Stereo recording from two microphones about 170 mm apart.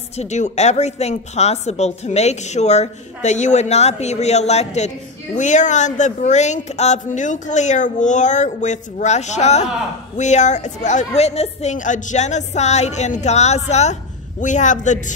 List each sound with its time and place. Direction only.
0.2 s a woman's voice: 40° left (ahead or behind)